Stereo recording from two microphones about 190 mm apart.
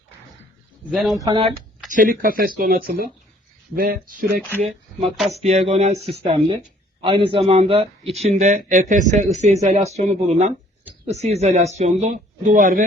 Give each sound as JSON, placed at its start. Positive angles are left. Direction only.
{"t": 0.9, "sound": "speech", "side_deg": 0}
{"t": 1.1, "sound": "a man's voice", "side_deg": -20}
{"t": 1.9, "sound": "speech", "side_deg": -45}
{"t": 4.6, "sound": "a man's voice", "side_deg": -35}